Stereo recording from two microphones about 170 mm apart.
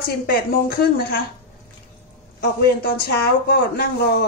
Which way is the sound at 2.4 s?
65° left (ahead or behind).